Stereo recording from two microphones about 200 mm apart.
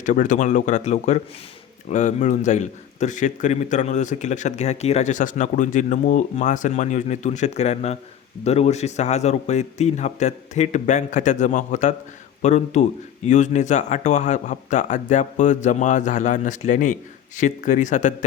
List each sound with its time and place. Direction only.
0.0 s a man's voice: 40° left (ahead or behind)